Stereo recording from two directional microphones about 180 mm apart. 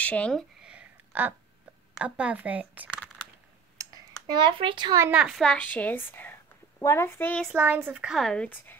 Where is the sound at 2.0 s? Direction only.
10° right (ahead or behind).